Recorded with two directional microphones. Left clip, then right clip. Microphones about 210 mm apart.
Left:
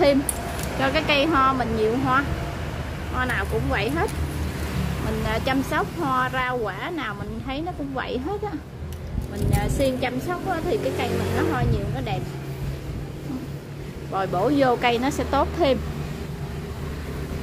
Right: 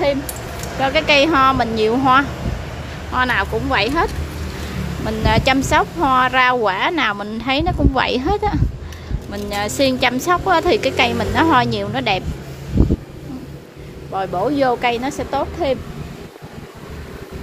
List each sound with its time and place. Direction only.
0.7 s speech: 5° right (ahead or behind)
1.0 s a woman's voice: 15° right (ahead or behind)
5.2 s a woman's voice: 20° right (ahead or behind)
9.6 s a woman's voice: 25° right (ahead or behind)
14.1 s speech: 5° right (ahead or behind)